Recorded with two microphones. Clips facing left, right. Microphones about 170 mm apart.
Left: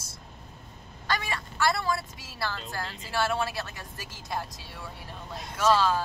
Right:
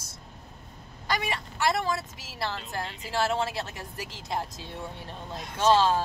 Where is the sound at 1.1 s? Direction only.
20° right (ahead or behind).